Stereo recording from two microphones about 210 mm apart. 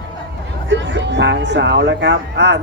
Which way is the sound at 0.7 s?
60° right (ahead or behind).